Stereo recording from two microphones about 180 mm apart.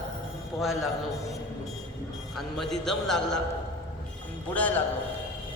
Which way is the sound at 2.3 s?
Centre (ahead or behind).